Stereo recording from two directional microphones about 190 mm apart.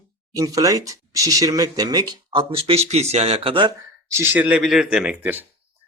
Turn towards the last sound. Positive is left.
turn(degrees=-5)  # may be behind; listen again after turning